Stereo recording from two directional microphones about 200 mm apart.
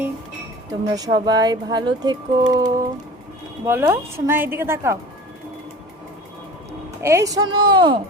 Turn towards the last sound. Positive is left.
turn(degrees=-20)  # may be behind; listen again after turning